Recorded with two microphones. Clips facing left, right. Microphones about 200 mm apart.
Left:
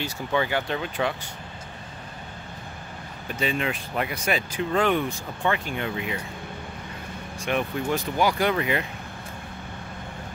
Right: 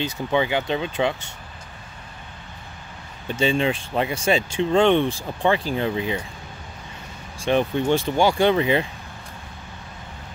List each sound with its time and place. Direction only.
0.0 s speech: 20° right (ahead or behind)
3.3 s speech: 30° right (ahead or behind)
7.3 s speech: 30° right (ahead or behind)